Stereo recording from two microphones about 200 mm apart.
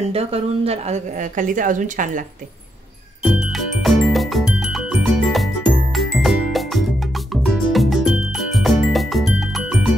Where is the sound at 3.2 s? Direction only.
Centre (ahead or behind).